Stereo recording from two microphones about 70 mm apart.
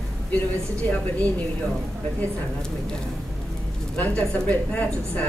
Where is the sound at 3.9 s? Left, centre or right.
Left.